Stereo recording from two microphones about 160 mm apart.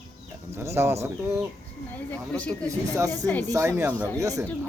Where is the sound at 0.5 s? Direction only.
15° right (ahead or behind).